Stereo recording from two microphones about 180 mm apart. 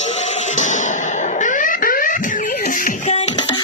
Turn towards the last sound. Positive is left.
turn(degrees=40)  # may be behind; listen again after turning